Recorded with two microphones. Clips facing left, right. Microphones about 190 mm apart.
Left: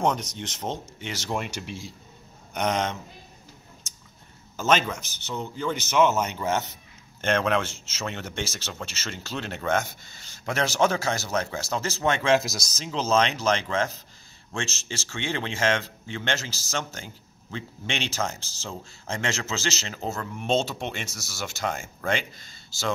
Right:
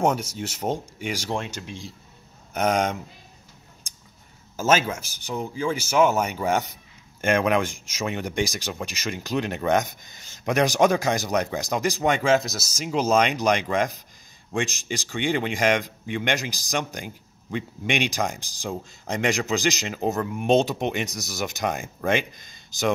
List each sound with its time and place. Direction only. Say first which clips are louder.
0.0 s speech: right 3 dB; 10° right (ahead or behind)
1.3 s speech: right 1 dB; 10° left (ahead or behind)
2.5 s speech: right 4 dB; 10° right (ahead or behind)
4.6 s speech: right 2 dB; 5° right (ahead or behind)